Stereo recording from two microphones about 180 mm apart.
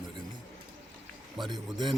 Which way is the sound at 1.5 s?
25° right (ahead or behind).